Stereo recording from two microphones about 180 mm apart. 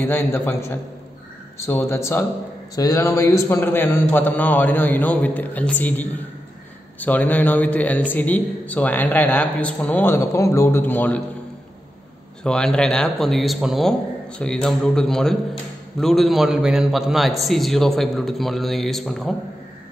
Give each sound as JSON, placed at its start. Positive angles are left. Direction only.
{"t": 0.0, "sound": "a man's voice", "side_deg": 10}
{"t": 12.4, "sound": "a man's voice", "side_deg": 5}